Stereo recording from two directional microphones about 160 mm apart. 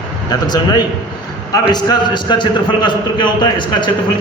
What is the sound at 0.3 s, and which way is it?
A man's voice, 25° left (ahead or behind).